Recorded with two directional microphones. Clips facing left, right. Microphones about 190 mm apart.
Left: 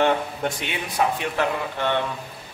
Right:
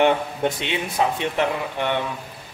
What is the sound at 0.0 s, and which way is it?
A man's voice, 25° right (ahead or behind).